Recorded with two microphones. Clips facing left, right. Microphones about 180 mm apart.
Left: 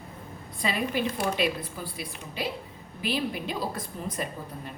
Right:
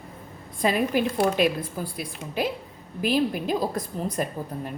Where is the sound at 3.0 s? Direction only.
45° right (ahead or behind).